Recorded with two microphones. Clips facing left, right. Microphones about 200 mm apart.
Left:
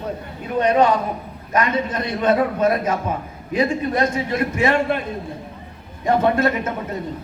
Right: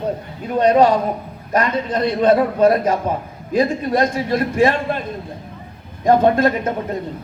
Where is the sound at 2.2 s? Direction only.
35° right (ahead or behind).